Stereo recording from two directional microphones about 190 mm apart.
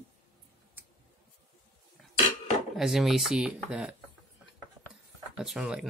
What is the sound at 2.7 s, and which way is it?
Speech, centre (ahead or behind).